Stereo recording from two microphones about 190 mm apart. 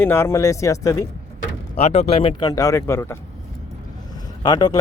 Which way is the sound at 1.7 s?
35° left (ahead or behind).